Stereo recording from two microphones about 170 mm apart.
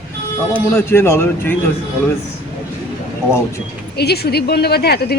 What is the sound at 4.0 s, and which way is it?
Speech, 70° left (ahead or behind).